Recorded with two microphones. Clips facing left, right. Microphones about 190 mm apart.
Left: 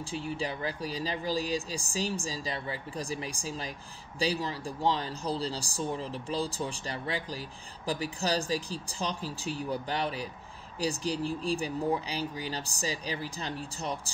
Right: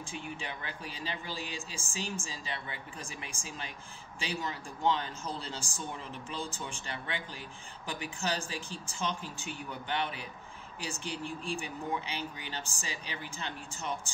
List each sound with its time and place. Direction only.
0.0 s speech: 35° left (ahead or behind)